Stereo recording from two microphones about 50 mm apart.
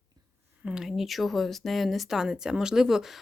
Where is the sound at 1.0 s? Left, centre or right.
Centre.